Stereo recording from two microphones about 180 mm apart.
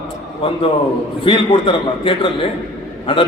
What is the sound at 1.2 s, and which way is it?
A man's voice, 30° left (ahead or behind).